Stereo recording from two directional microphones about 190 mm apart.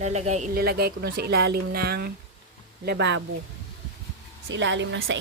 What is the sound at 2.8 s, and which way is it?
Speech, 70° right (ahead or behind).